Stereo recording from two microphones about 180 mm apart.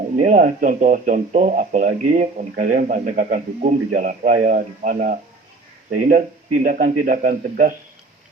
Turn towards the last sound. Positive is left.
turn(degrees=-50)  # may be behind; listen again after turning